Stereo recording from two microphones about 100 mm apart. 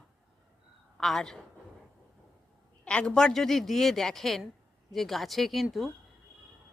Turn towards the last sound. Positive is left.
turn(degrees=0)  # may be behind; listen again after turning